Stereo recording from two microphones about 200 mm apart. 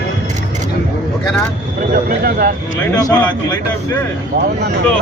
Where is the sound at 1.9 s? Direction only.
50° right (ahead or behind).